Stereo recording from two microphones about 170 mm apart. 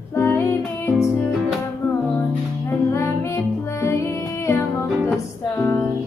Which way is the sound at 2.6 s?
15° left (ahead or behind).